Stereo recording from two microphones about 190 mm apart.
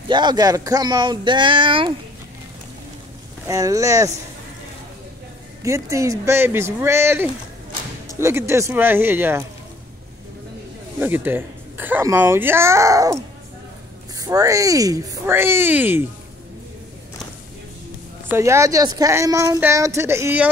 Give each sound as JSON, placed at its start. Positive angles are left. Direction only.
{"t": 0.1, "sound": "speech", "side_deg": -20}
{"t": 3.4, "sound": "speech", "side_deg": -15}
{"t": 5.6, "sound": "speech", "side_deg": -15}
{"t": 11.0, "sound": "speech", "side_deg": -10}
{"t": 18.3, "sound": "speech", "side_deg": -15}